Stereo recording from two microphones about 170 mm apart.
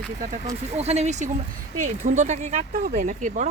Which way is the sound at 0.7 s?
40° right (ahead or behind).